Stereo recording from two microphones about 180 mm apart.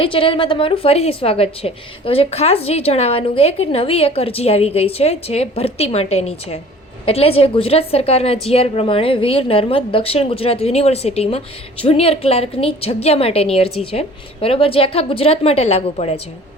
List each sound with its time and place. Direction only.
0.0 s a woman's voice: 30° left (ahead or behind)